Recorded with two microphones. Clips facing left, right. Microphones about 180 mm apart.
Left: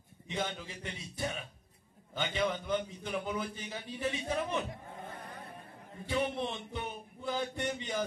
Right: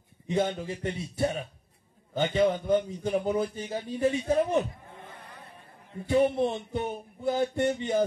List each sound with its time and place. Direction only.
0.3 s a man's voice: 45° right (ahead or behind)
6.1 s a man's voice: 45° right (ahead or behind)